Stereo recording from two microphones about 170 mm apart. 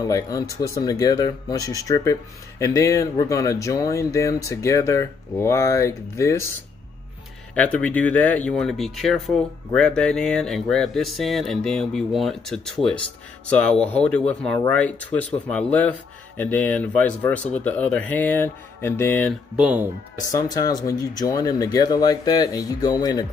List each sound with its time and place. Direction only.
0.0 s speech: 20° left (ahead or behind)
7.5 s speech: 10° left (ahead or behind)
19.5 s speech: 10° right (ahead or behind)
20.3 s speech: 20° left (ahead or behind)